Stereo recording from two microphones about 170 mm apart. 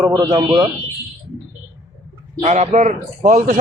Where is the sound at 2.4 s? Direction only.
40° right (ahead or behind).